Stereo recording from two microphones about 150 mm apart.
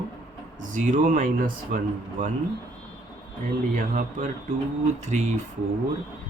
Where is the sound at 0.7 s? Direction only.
60° right (ahead or behind).